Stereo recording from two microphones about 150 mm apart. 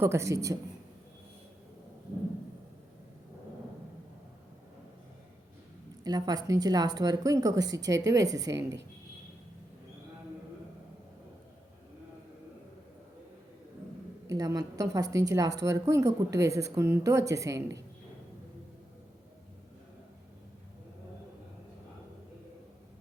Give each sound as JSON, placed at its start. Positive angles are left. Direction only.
{"t": 0.0, "sound": "a woman's voice", "side_deg": -20}
{"t": 6.0, "sound": "a woman's voice", "side_deg": -25}
{"t": 14.3, "sound": "a woman's voice", "side_deg": -25}